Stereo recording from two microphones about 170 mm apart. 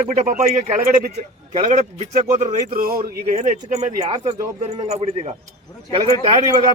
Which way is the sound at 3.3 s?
45° right (ahead or behind).